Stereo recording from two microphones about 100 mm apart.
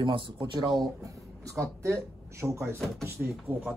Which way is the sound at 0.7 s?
35° right (ahead or behind).